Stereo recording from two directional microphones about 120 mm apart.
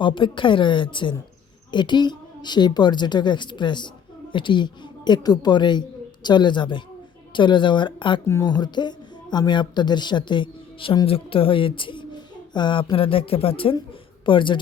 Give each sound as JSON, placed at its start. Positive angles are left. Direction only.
{"t": 0.0, "sound": "a woman's voice", "side_deg": 45}